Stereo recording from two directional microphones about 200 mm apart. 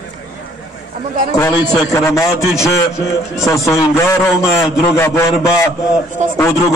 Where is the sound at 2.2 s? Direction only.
Centre (ahead or behind).